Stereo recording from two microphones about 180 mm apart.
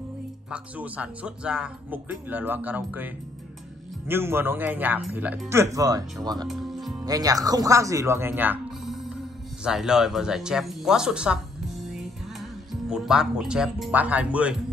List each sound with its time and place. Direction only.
0.5 s speech: 10° right (ahead or behind)
4.1 s speech: 10° right (ahead or behind)
6.4 s speech: centre (ahead or behind)
7.1 s speech: 20° right (ahead or behind)